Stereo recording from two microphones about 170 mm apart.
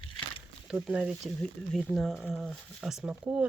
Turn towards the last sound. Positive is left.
turn(degrees=-5)  # may be behind; listen again after turning